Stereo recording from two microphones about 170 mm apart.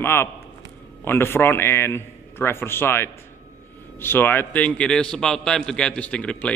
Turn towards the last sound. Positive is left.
turn(degrees=5)  # may be behind; listen again after turning